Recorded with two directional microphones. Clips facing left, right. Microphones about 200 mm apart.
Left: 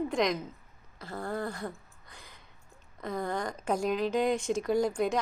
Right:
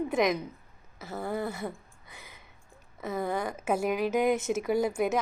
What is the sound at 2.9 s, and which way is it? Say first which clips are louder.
A woman's voice: right 2 dB; 5° right (ahead or behind).